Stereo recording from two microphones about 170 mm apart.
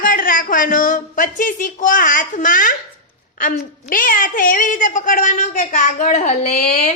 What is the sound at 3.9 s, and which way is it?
A man's voice, 55° left (ahead or behind).